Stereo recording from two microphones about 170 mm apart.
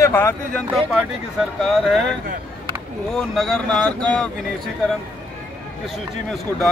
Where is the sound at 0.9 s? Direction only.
Centre (ahead or behind).